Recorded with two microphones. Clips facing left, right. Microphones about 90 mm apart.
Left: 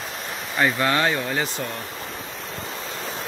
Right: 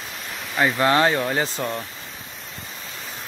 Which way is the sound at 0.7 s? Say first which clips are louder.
Right 3 dB; 30° right (ahead or behind).